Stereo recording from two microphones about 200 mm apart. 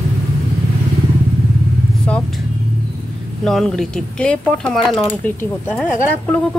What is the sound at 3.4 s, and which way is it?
Speech, centre (ahead or behind).